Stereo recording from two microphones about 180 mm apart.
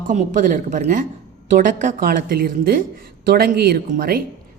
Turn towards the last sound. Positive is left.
turn(degrees=-55)  # may be behind; listen again after turning